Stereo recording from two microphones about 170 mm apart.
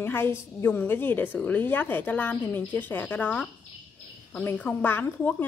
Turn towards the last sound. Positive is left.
turn(degrees=10)  # may be behind; listen again after turning